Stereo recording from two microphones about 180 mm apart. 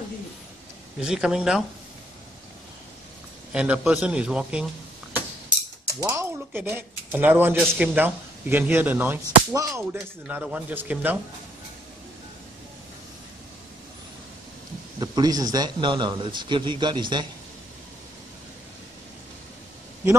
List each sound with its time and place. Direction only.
0.9 s a man's voice: 5° right (ahead or behind)
3.5 s a man's voice: 5° right (ahead or behind)
5.9 s speech: 15° right (ahead or behind)
9.9 s speech: 5° right (ahead or behind)
15.0 s a man's voice: 20° right (ahead or behind)